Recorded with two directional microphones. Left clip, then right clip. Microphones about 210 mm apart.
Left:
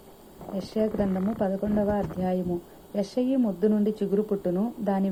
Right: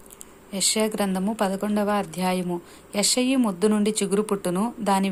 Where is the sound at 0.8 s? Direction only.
35° right (ahead or behind).